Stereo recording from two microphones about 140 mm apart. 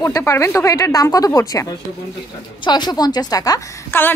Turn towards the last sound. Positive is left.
turn(degrees=25)  # may be behind; listen again after turning